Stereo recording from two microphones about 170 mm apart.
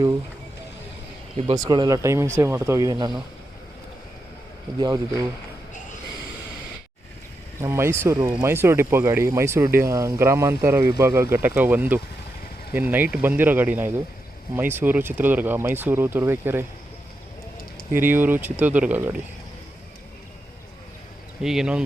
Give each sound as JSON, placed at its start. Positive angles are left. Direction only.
{"t": 1.5, "sound": "speech", "side_deg": -25}
{"t": 4.8, "sound": "speech", "side_deg": -20}
{"t": 7.6, "sound": "speech", "side_deg": -15}
{"t": 17.9, "sound": "speech", "side_deg": -10}
{"t": 21.4, "sound": "speech", "side_deg": -5}